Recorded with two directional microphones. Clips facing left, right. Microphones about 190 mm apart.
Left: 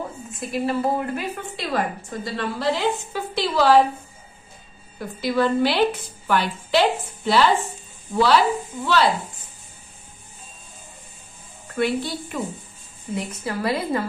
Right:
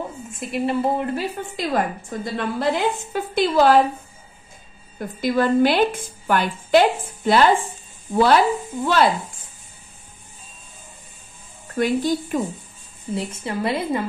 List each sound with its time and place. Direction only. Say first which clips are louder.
0.3 s a woman's voice: right 1 dB; 25° right (ahead or behind); by 3.8 s 50° right (ahead or behind)
4.9 s a woman's voice: right 2 dB; 50° right (ahead or behind)
11.7 s a woman's voice: right 3 dB; 45° right (ahead or behind)
13.1 s a woman's voice: right 1 dB; 25° right (ahead or behind)